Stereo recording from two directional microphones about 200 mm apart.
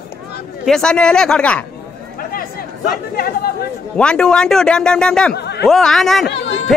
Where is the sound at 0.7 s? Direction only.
5° left (ahead or behind).